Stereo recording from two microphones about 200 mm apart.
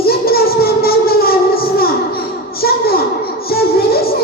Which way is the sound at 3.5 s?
50° left (ahead or behind).